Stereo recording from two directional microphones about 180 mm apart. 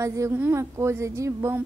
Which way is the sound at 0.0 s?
15° right (ahead or behind).